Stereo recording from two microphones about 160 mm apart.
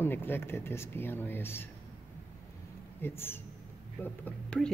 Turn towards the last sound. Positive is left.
turn(degrees=10)  # may be behind; listen again after turning